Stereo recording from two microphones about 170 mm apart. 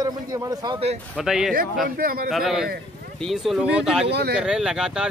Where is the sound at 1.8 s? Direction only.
60° right (ahead or behind).